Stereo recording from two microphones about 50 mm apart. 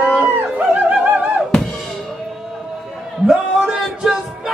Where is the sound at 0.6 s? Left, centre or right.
Right.